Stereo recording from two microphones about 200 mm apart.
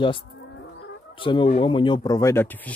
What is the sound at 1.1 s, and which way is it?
Speech, 25° left (ahead or behind).